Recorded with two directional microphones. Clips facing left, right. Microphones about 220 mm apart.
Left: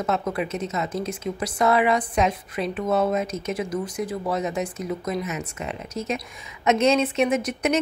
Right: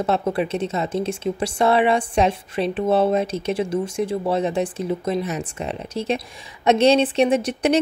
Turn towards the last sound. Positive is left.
turn(degrees=-30)  # may be behind; listen again after turning